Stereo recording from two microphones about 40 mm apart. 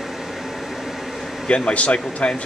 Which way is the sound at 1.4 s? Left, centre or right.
Left.